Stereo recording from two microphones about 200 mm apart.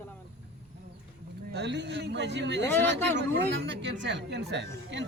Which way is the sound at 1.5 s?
60° right (ahead or behind).